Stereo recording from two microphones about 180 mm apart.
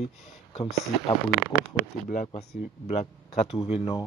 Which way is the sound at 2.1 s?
45° left (ahead or behind).